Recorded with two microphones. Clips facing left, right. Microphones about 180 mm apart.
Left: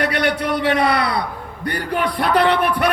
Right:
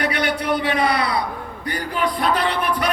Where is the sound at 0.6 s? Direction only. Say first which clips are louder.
Left 3 dB; 65° left (ahead or behind).